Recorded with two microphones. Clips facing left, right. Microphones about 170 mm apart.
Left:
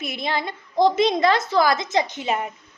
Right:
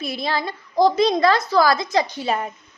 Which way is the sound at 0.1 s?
20° left (ahead or behind).